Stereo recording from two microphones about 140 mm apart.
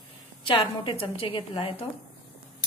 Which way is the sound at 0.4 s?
35° left (ahead or behind).